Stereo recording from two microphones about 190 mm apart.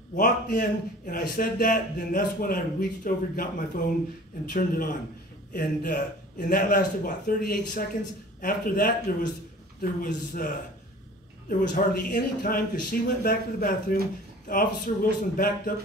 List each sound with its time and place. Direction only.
0.1 s speech: 45° left (ahead or behind)
11.7 s speech: 45° left (ahead or behind)